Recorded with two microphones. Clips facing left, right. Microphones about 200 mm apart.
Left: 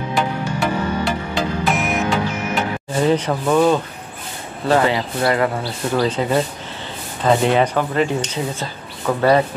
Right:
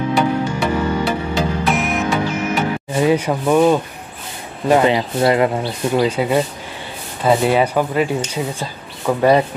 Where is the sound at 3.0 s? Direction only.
10° right (ahead or behind).